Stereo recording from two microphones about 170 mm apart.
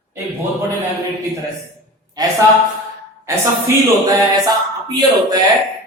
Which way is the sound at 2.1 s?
20° right (ahead or behind).